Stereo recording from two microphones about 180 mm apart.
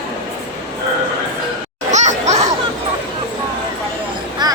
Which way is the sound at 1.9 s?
40° right (ahead or behind).